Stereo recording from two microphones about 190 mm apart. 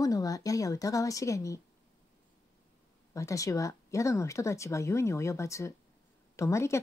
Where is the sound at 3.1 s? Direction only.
15° left (ahead or behind).